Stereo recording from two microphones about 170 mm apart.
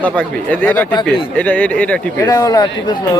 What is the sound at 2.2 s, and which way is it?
Speech, 20° left (ahead or behind).